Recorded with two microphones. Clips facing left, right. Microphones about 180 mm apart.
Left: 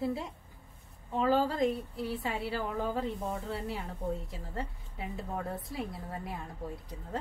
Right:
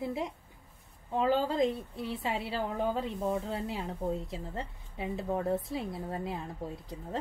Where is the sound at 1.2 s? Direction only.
20° right (ahead or behind).